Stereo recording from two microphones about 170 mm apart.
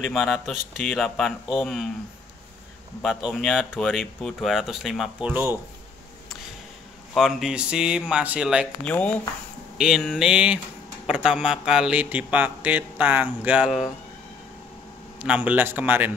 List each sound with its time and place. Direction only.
0.0 s speech: centre (ahead or behind)
3.0 s speech: centre (ahead or behind)
5.3 s a man's voice: 10° right (ahead or behind)
7.2 s speech: centre (ahead or behind)
8.8 s a man's voice: 5° left (ahead or behind)
15.1 s a man's voice: 10° right (ahead or behind)